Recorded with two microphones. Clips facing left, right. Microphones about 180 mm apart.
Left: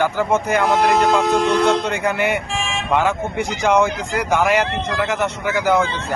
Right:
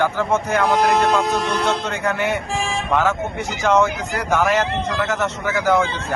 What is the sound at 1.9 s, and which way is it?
Speech, 10° left (ahead or behind).